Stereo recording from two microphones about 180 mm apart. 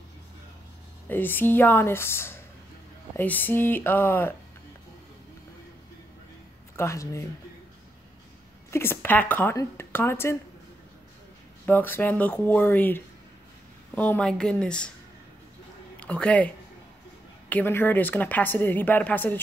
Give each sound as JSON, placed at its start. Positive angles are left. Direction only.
{"t": 1.0, "sound": "a woman's voice", "side_deg": 10}
{"t": 6.8, "sound": "a woman's voice", "side_deg": 15}
{"t": 8.6, "sound": "a woman's voice", "side_deg": 15}
{"t": 11.6, "sound": "a woman's voice", "side_deg": 10}
{"t": 16.0, "sound": "a woman's voice", "side_deg": 5}